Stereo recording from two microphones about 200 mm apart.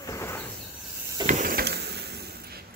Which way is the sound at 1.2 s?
40° right (ahead or behind).